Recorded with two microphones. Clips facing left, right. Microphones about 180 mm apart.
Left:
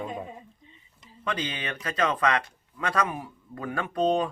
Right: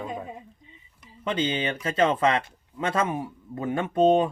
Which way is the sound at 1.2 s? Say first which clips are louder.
Right 6 dB; 25° right (ahead or behind).